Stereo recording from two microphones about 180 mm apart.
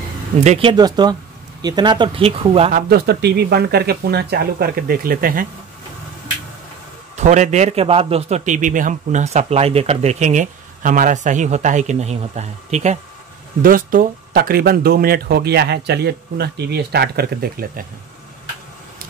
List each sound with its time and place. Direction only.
0.4 s speech: 35° right (ahead or behind)
2.7 s speech: 60° right (ahead or behind)
7.2 s a man's voice: 40° right (ahead or behind)
13.6 s speech: 50° right (ahead or behind)